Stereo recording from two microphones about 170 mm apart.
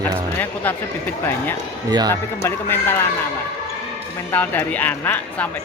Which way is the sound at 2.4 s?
15° left (ahead or behind).